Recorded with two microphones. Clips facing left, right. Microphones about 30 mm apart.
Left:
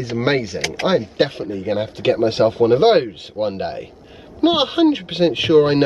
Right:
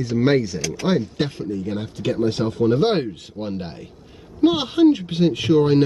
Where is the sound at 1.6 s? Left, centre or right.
Left.